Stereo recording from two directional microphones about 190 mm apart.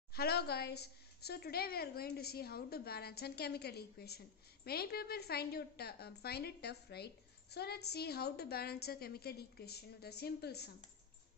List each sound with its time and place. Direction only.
0.1 s a woman's voice: 55° left (ahead or behind)